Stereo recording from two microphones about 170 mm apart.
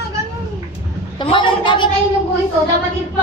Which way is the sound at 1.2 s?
30° left (ahead or behind).